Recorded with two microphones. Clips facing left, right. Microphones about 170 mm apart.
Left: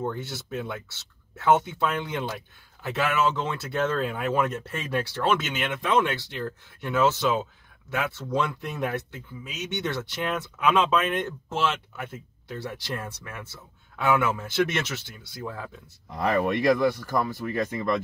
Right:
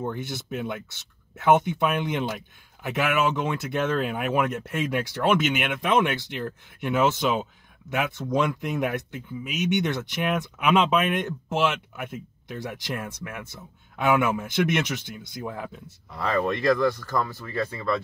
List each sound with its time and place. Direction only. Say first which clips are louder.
0.0 s speech: even; 15° right (ahead or behind)
16.1 s speech: left 1 dB; 15° left (ahead or behind)